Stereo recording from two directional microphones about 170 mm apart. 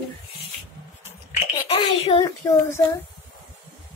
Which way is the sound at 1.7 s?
35° left (ahead or behind).